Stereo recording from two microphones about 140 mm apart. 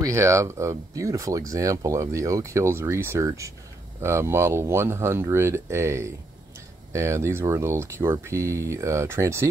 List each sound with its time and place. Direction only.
0.0 s speech: 20° right (ahead or behind)